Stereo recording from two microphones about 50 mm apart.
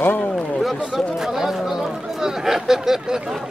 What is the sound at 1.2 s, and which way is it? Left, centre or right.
Speech, centre.